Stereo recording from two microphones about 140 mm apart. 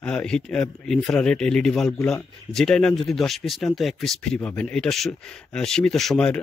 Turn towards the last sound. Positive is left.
turn(degrees=5)  # may be behind; listen again after turning